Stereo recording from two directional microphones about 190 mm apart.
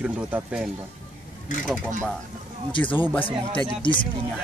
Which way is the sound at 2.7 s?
25° left (ahead or behind).